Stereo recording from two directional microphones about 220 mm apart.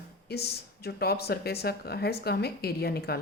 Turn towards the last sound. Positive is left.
turn(degrees=45)  # may be behind; listen again after turning